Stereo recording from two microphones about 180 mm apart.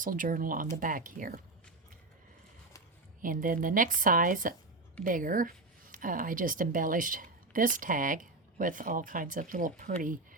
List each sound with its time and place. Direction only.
0.0 s speech: 50° right (ahead or behind)
3.2 s speech: 50° right (ahead or behind)